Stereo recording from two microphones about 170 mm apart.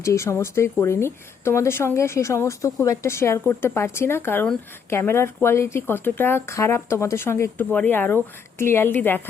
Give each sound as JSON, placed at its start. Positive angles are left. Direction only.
{"t": 0.0, "sound": "speech", "side_deg": 15}